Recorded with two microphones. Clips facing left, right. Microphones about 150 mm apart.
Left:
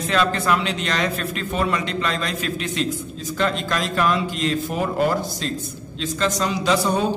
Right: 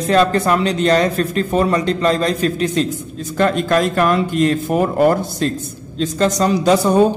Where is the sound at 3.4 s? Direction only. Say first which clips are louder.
Right 8 dB; 50° right (ahead or behind).